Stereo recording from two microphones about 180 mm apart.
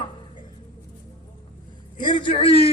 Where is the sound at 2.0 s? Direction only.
25° left (ahead or behind).